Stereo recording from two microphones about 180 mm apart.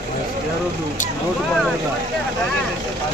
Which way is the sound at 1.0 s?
45° left (ahead or behind).